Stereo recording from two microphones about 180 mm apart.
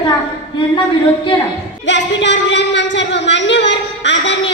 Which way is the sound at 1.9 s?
80° left.